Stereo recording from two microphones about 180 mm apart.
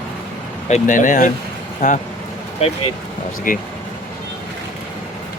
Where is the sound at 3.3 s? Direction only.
50° left (ahead or behind).